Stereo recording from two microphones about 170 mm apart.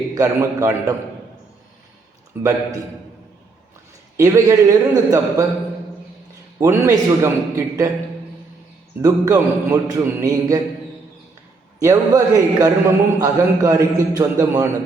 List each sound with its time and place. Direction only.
0.1 s a man's voice: 20° right (ahead or behind)
2.3 s a man's voice: 15° right (ahead or behind)
4.2 s a man's voice: 15° right (ahead or behind)
6.6 s a man's voice: 20° right (ahead or behind)
9.0 s a man's voice: 20° right (ahead or behind)
11.8 s a man's voice: 20° right (ahead or behind)